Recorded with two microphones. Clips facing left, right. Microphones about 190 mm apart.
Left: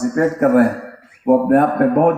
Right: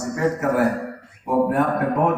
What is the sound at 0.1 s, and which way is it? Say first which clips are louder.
A man's voice: left 6 dB; 55° left (ahead or behind).